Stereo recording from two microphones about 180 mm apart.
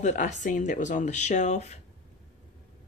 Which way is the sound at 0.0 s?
45° left (ahead or behind).